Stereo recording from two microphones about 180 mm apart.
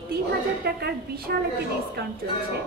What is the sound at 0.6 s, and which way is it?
A woman's voice, 60° right (ahead or behind).